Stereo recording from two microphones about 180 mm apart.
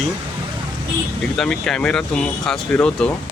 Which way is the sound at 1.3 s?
5° left (ahead or behind).